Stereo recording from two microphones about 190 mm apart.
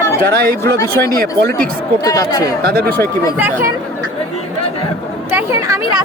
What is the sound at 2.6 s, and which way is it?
Speech, 50° right (ahead or behind).